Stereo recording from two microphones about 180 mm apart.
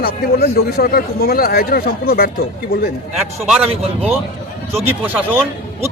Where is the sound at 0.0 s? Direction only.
60° left (ahead or behind).